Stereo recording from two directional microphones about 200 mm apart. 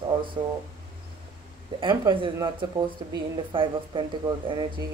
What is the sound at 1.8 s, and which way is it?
Speech, 25° right (ahead or behind).